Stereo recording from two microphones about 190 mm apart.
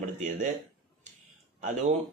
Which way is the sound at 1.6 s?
40° right (ahead or behind).